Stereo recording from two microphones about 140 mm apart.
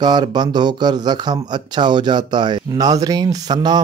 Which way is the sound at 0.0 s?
30° right (ahead or behind).